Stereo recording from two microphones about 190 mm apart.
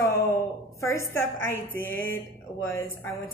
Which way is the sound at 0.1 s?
15° left (ahead or behind).